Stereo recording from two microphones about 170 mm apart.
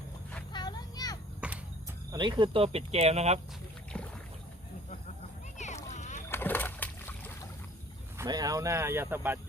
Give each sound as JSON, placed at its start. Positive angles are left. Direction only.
{"t": 0.5, "sound": "vehicle", "side_deg": 25}
{"t": 1.4, "sound": "a sound", "side_deg": -5}
{"t": 2.1, "sound": "speech", "side_deg": -30}
{"t": 3.9, "sound": "boat", "side_deg": 5}
{"t": 5.5, "sound": "music", "side_deg": 45}
{"t": 6.2, "sound": "splash", "side_deg": 10}
{"t": 8.2, "sound": "speech", "side_deg": -20}